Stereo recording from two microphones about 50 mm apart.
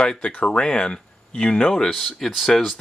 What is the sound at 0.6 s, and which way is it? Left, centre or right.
Speech, centre.